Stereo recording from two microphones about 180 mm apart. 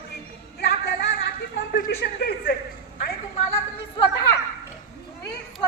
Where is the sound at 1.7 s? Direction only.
55° left (ahead or behind).